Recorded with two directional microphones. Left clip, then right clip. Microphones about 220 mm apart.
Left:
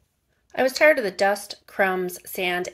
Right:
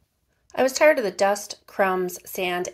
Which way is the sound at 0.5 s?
Centre (ahead or behind).